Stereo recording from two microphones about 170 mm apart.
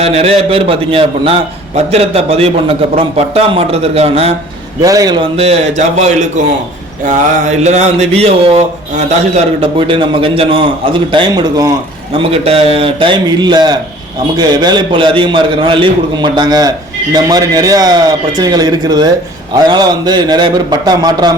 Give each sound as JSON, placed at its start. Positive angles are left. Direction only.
{"t": 0.0, "sound": "a man's voice", "side_deg": -35}
{"t": 4.8, "sound": "a man's voice", "side_deg": -20}
{"t": 12.1, "sound": "a man's voice", "side_deg": -35}